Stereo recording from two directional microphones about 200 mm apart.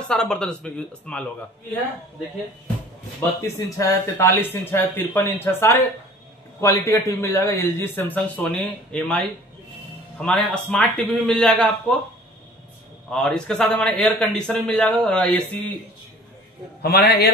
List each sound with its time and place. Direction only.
0.1 s speech: 5° left (ahead or behind)
3.2 s speech: 15° left (ahead or behind)
10.2 s speech: 5° left (ahead or behind)
13.1 s speech: 5° left (ahead or behind)
16.8 s a man's voice: 50° left (ahead or behind)